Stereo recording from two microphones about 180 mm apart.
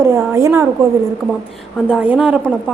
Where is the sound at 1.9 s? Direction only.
5° right (ahead or behind).